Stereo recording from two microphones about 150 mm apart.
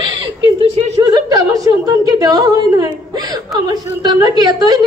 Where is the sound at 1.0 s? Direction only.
25° right (ahead or behind).